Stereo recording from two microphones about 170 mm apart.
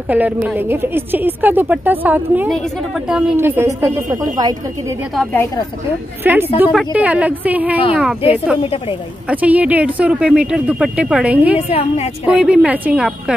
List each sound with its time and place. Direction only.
0.1 s a woman's voice: 10° right (ahead or behind)
2.5 s a woman's voice: centre (ahead or behind); by 4.9 s 20° right (ahead or behind)
5.1 s a woman's voice: 5° left (ahead or behind)
6.2 s a woman's voice: 10° right (ahead or behind)
8.6 s a woman's voice: 35° left (ahead or behind)
9.3 s a woman's voice: 10° right (ahead or behind)